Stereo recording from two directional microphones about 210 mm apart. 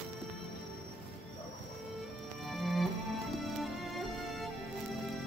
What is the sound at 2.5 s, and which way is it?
Music, centre (ahead or behind).